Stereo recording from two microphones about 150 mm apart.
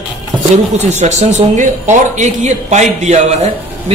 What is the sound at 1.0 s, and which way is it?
Speech, 50° right (ahead or behind).